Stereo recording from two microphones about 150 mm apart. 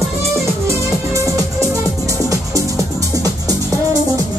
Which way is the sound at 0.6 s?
20° right (ahead or behind).